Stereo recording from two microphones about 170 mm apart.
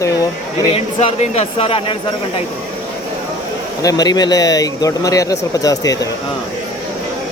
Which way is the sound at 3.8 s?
20° left (ahead or behind).